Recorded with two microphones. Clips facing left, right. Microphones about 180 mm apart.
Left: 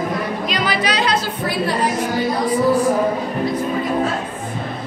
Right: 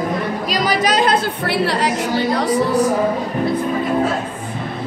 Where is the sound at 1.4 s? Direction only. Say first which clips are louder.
Even; 75° right (ahead or behind).